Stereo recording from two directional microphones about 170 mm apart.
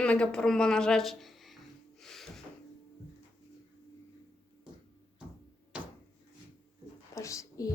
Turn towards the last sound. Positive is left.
turn(degrees=20)  # may be behind; listen again after turning